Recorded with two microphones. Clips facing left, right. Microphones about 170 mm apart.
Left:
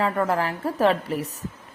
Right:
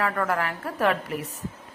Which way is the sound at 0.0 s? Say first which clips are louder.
Left 3 dB; 25° left (ahead or behind).